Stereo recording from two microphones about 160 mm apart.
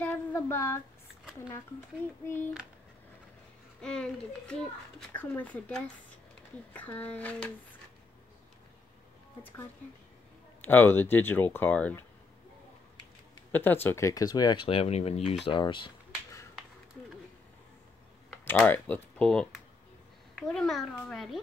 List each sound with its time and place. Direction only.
0.0 s female singing: 10° left (ahead or behind)
2.2 s speech: 10° left (ahead or behind)
3.8 s a child's voice: 5° left (ahead or behind)
10.6 s speech: 10° left (ahead or behind)
13.5 s speech: 10° left (ahead or behind); by 15.9 s 30° left (ahead or behind)
18.4 s a child's voice: 15° left (ahead or behind)